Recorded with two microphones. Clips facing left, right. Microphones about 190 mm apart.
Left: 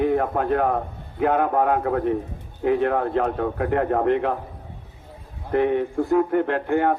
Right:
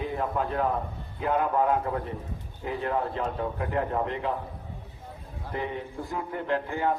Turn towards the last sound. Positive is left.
turn(degrees=60)  # may be behind; listen again after turning